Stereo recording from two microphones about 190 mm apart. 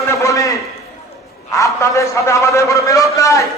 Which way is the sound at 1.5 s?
15° left (ahead or behind).